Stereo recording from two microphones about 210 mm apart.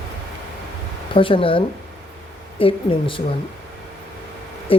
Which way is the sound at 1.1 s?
25° left (ahead or behind).